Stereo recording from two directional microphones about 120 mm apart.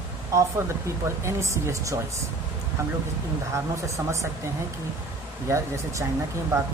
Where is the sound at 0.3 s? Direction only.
25° right (ahead or behind).